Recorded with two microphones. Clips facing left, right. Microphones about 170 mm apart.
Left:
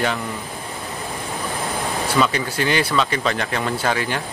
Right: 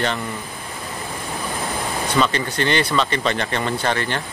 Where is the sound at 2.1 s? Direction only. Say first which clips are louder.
Even; 5° left (ahead or behind).